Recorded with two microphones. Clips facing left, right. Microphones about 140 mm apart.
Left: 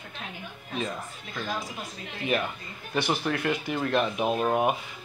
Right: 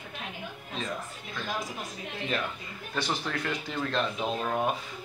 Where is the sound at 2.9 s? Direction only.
10° left (ahead or behind).